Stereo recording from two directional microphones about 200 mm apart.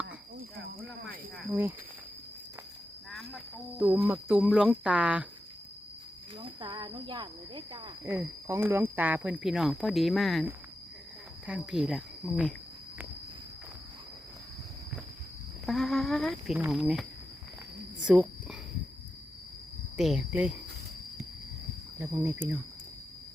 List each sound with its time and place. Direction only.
1.5 s speech: 10° right (ahead or behind)
3.1 s a sound: centre (ahead or behind)
3.8 s speech: 10° right (ahead or behind)
6.4 s speech: 25° right (ahead or behind); by 12.5 s 5° right (ahead or behind)
15.6 s speech: centre (ahead or behind)
20.0 s speech: centre (ahead or behind)
21.9 s speech: 10° right (ahead or behind)